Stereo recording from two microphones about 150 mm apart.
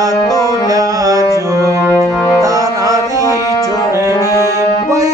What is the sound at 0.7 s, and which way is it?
Carnatic music, 25° right (ahead or behind).